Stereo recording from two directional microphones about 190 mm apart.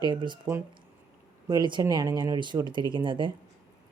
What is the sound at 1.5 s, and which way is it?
Speech, 25° right (ahead or behind).